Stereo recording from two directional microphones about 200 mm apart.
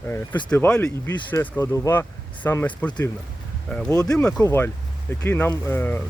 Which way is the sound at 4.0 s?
15° left (ahead or behind).